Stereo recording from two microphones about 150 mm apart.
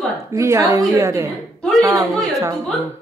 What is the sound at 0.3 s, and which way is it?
A woman's voice, 20° right (ahead or behind).